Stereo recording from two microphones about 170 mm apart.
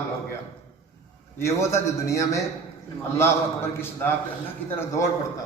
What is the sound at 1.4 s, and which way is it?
A man's voice, 15° left (ahead or behind).